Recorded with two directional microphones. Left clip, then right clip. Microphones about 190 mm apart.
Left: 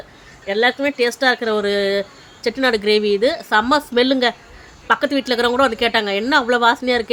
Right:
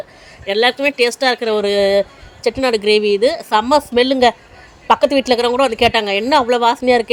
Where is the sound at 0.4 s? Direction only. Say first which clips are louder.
Right 3 dB; 30° right (ahead or behind).